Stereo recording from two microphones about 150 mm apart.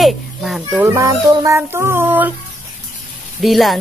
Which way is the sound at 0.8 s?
20° right (ahead or behind).